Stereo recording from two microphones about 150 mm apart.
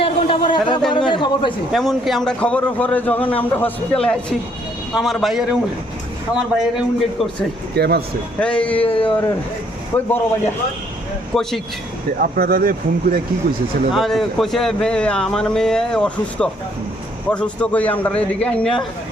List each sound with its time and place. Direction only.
0.0 s a sound: 35° left (ahead or behind)
0.9 s a man's voice: 35° left (ahead or behind)
1.7 s a man's voice: centre (ahead or behind)
7.8 s speech: 90° right
8.4 s a man's voice: 10° left (ahead or behind)
8.9 s a man's voice: 35° left (ahead or behind)
9.9 s a man's voice: 15° left (ahead or behind)
11.3 s speech: centre (ahead or behind)
12.2 s speech: 75° right (ahead or behind)
13.9 s a man's voice: centre (ahead or behind)